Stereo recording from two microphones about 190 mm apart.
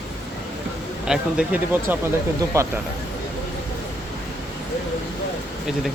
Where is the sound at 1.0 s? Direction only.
5° right (ahead or behind).